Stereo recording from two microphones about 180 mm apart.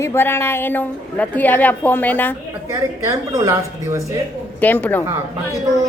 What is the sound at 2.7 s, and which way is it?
A woman's voice, 15° right (ahead or behind).